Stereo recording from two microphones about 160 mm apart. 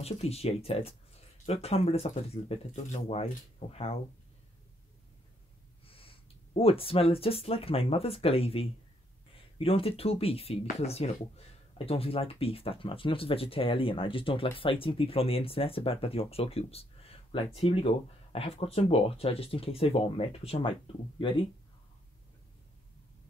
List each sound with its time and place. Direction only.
0.0 s speech: 40° left (ahead or behind)
5.9 s speech: 35° left (ahead or behind)